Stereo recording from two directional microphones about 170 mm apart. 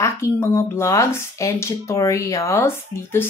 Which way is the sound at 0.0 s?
15° left (ahead or behind).